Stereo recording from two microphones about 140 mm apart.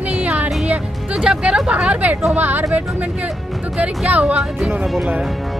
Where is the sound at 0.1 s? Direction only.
10° right (ahead or behind).